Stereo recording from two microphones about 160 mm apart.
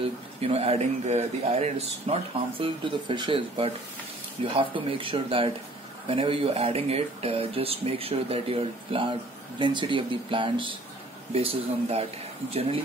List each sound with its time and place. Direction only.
0.4 s speech: 40° right (ahead or behind)